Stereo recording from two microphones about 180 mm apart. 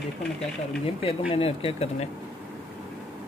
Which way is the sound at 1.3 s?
30° left (ahead or behind).